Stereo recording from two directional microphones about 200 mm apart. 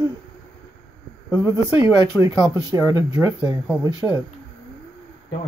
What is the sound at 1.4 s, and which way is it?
Speech, 15° right (ahead or behind).